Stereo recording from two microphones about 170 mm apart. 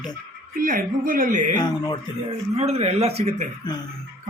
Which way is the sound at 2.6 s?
35° right (ahead or behind).